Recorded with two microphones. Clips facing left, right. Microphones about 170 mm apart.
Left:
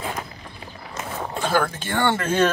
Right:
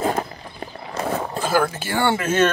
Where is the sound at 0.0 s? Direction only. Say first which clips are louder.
Right 8 dB; 45° right (ahead or behind).